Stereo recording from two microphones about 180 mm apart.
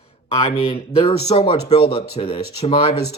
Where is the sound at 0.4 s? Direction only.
35° left (ahead or behind).